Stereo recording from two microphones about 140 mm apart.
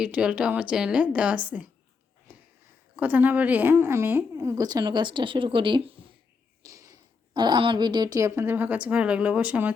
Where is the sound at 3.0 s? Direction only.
10° right (ahead or behind); by 5.9 s 40° right (ahead or behind).